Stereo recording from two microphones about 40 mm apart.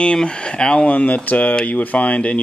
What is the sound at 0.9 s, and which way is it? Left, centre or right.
Speech, left.